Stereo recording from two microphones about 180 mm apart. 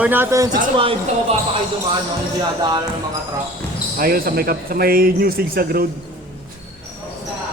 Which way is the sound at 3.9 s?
55° right (ahead or behind).